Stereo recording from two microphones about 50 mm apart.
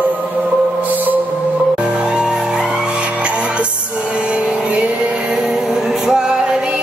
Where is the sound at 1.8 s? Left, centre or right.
Centre.